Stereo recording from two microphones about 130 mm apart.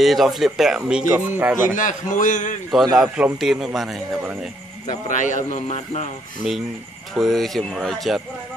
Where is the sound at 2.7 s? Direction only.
Centre (ahead or behind).